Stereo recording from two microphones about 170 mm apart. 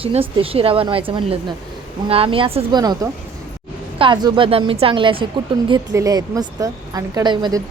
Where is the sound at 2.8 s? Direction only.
20° right (ahead or behind).